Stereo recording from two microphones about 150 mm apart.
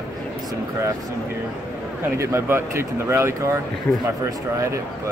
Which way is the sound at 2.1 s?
20° right (ahead or behind).